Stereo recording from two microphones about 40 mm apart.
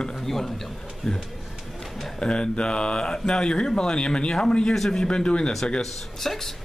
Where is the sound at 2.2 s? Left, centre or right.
Left.